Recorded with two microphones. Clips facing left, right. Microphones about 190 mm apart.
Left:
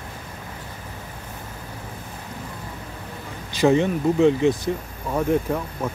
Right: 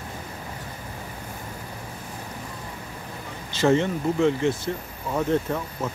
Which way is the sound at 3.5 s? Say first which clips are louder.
Left 3 dB; 15° left (ahead or behind).